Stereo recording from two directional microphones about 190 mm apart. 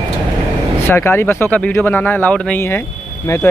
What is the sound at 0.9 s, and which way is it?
Speech, 10° left (ahead or behind).